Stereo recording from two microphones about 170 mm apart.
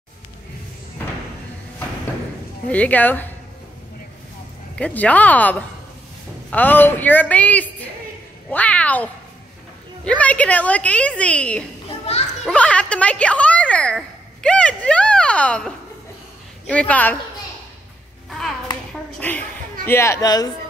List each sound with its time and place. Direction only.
2.7 s a woman's voice: 10° left (ahead or behind)
4.7 s a woman's voice: 5° left (ahead or behind)
19.1 s a sound: 10° left (ahead or behind)
19.9 s speech: 15° left (ahead or behind)